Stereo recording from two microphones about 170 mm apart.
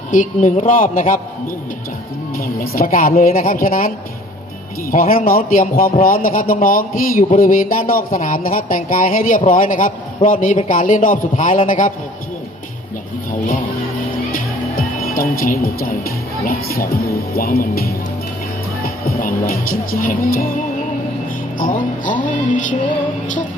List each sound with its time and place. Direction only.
0.1 s a man's voice: 50° left (ahead or behind)
2.4 s a man's voice: 55° left (ahead or behind)
14.3 s speech: 55° left (ahead or behind)
18.8 s music: 60° left (ahead or behind)
21.6 s a man's voice: 50° left (ahead or behind)